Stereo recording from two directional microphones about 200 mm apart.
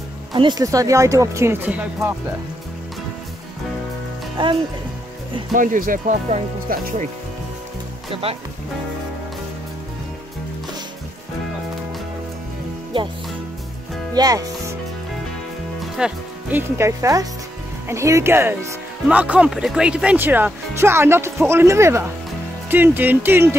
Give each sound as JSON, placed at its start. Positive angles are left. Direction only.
{"t": 0.3, "sound": "speech", "side_deg": -20}
{"t": 4.4, "sound": "speech", "side_deg": -25}
{"t": 5.5, "sound": "speech", "side_deg": -40}
{"t": 8.1, "sound": "speech", "side_deg": -30}
{"t": 14.1, "sound": "speech", "side_deg": -20}
{"t": 15.8, "sound": "speech", "side_deg": -5}